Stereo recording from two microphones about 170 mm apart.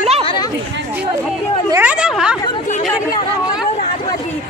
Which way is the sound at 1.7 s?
10° right (ahead or behind).